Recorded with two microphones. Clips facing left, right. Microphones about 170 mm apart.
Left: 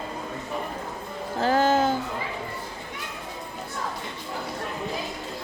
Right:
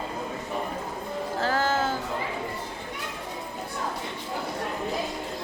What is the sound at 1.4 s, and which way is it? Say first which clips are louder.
Music: left 5 dB; 20° left (ahead or behind).